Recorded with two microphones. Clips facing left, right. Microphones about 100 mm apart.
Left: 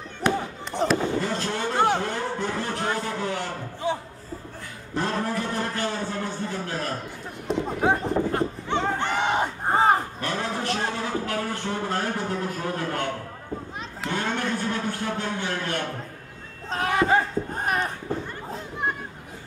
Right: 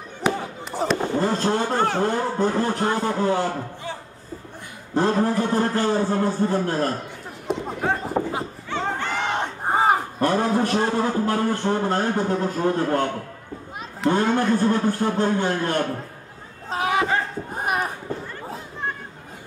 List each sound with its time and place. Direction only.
0.2 s chop: 5° right (ahead or behind)
1.2 s a man's voice: 35° right (ahead or behind)
3.8 s music: 15° left (ahead or behind)
4.9 s a man's voice: 35° right (ahead or behind)
7.5 s run: centre (ahead or behind)
8.1 s speech: 5° right (ahead or behind)
8.6 s a sound: 20° left (ahead or behind)
9.1 s battle cry: 5° left (ahead or behind)
10.2 s a man's voice: 40° right (ahead or behind)
14.0 s a man's voice: 35° right (ahead or behind)
16.6 s a sound: 5° right (ahead or behind)